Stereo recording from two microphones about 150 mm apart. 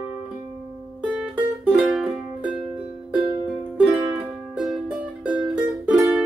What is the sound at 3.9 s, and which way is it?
Music, 20° right (ahead or behind).